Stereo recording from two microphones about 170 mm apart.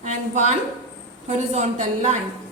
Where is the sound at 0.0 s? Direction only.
45° right (ahead or behind).